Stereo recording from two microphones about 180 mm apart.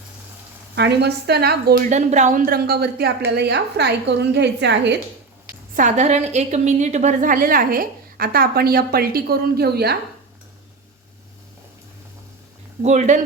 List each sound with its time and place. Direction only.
0.8 s a woman's voice: 65° right (ahead or behind)
1.9 s a woman's voice: 40° right (ahead or behind); by 4.9 s 75° right (ahead or behind)
5.7 s a woman's voice: 40° right (ahead or behind); by 10.0 s 60° right (ahead or behind)
12.8 s speech: 40° right (ahead or behind)